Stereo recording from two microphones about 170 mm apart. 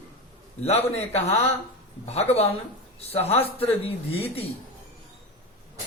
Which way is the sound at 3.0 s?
35° left (ahead or behind).